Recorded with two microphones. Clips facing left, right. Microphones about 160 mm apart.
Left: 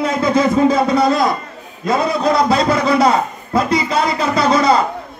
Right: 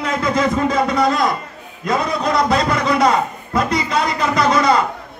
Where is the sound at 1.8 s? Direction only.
30° left (ahead or behind).